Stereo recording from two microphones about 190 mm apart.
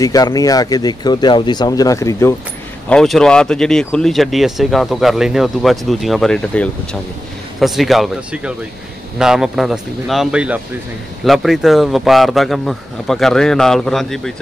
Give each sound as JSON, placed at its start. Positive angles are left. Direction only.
{"t": 0.0, "sound": "speech", "side_deg": 20}
{"t": 2.9, "sound": "speech", "side_deg": 5}